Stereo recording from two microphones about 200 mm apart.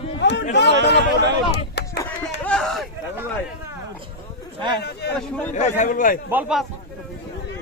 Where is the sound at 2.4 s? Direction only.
5° left (ahead or behind).